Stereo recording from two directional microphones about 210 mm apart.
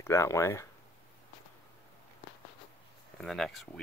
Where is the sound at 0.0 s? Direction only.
10° left (ahead or behind).